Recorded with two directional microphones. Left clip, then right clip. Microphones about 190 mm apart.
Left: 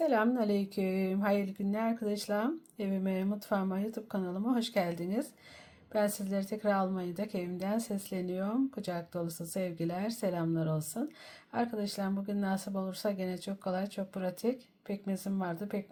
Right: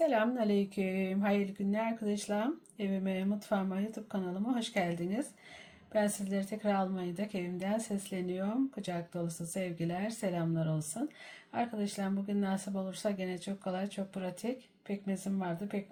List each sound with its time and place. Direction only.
0.0 s a woman's voice: 20° left (ahead or behind)